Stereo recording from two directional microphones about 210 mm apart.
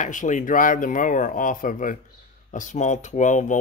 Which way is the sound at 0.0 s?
35° left (ahead or behind).